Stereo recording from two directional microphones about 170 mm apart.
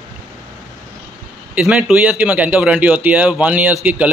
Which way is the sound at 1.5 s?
5° right (ahead or behind).